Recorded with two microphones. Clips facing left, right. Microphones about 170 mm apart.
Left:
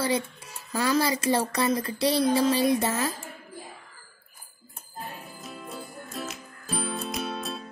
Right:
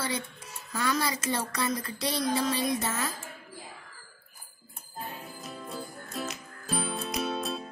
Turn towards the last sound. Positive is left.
turn(degrees=0)  # may be behind; listen again after turning